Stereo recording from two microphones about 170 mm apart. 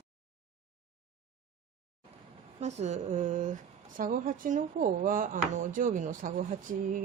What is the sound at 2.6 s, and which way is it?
Speech, 40° right (ahead or behind).